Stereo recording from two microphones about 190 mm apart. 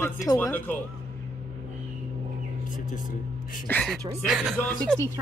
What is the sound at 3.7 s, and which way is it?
Speech, 5° left (ahead or behind).